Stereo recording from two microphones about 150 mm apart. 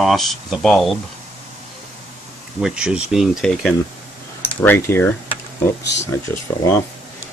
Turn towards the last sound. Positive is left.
turn(degrees=15)  # may be behind; listen again after turning